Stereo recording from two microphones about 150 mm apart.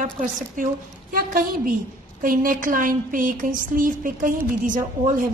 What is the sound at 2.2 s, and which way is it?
Speech, 65° right (ahead or behind).